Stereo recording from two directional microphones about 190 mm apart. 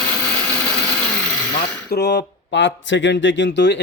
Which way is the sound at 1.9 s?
60° left (ahead or behind).